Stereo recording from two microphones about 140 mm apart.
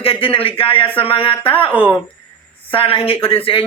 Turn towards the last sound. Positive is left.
turn(degrees=40)  # may be behind; listen again after turning